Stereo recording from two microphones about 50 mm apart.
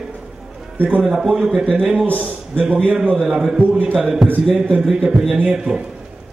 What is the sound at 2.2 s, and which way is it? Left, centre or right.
Speech, right.